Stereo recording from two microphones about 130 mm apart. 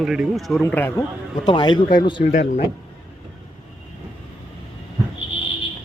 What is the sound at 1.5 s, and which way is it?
Speech, 35° left (ahead or behind).